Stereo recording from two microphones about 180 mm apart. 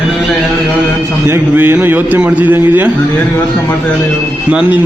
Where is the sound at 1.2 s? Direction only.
10° right (ahead or behind).